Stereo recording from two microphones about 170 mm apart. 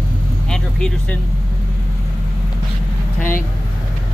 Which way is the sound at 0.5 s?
5° left (ahead or behind).